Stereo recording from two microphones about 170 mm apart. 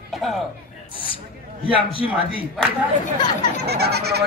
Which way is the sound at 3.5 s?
75° right (ahead or behind).